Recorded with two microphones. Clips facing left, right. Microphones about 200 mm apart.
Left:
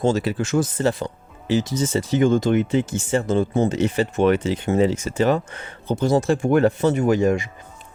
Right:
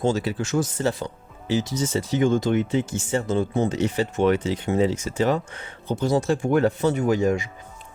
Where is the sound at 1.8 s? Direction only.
55° left (ahead or behind).